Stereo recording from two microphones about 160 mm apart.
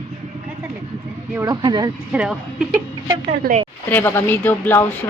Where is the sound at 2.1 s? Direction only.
5° right (ahead or behind).